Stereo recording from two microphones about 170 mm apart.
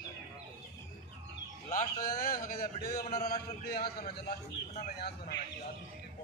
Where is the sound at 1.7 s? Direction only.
60° left (ahead or behind).